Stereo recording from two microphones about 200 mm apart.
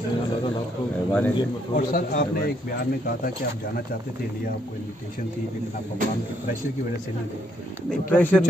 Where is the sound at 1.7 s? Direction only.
45° left (ahead or behind).